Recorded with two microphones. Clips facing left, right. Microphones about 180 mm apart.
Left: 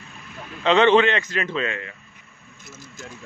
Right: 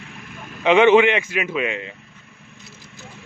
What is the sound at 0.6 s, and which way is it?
A man's voice, 10° right (ahead or behind).